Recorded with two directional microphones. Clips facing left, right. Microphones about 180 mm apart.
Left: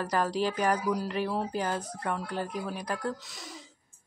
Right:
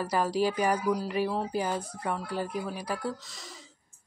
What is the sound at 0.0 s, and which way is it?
Speech, 10° right (ahead or behind).